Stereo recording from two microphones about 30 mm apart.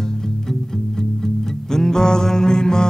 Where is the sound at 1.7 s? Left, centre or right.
Centre.